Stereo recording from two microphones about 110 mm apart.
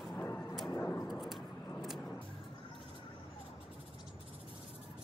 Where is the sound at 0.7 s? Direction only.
20° left (ahead or behind).